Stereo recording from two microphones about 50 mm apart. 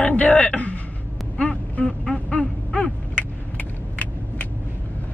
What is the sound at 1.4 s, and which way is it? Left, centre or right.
Vehicle, left.